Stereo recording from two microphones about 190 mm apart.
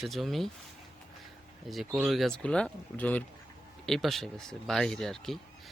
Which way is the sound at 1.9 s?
10° right (ahead or behind).